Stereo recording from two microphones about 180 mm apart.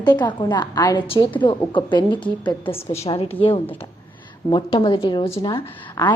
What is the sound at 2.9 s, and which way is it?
A woman's voice, 35° left (ahead or behind).